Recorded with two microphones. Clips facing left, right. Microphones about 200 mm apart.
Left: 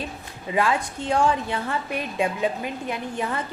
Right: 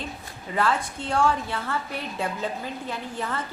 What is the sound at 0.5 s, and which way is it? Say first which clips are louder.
A woman's voice: left 2 dB; 15° left (ahead or behind).